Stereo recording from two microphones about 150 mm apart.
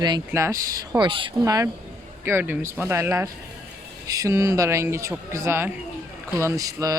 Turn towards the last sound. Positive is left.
turn(degrees=-25)  # may be behind; listen again after turning